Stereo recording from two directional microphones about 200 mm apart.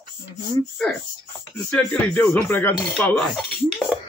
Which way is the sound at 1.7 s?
10° left (ahead or behind).